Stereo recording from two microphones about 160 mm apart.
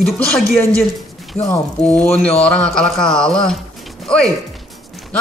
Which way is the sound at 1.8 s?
5° left (ahead or behind).